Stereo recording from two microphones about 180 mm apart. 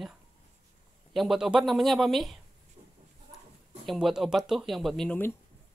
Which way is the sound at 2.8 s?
25° right (ahead or behind).